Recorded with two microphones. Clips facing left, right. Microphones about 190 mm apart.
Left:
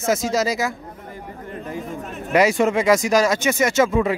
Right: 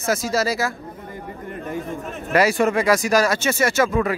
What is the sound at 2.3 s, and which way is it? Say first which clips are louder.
A man's voice: left 1 dB; 20° left (ahead or behind).